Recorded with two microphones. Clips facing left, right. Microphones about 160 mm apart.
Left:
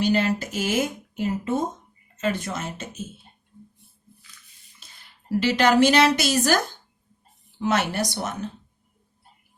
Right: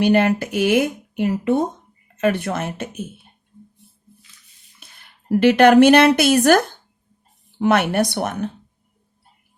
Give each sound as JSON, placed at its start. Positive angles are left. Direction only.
{"t": 0.0, "sound": "speech", "side_deg": -60}
{"t": 4.8, "sound": "a woman's voice", "side_deg": -60}